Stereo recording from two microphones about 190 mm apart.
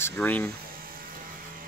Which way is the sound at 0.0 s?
10° left (ahead or behind).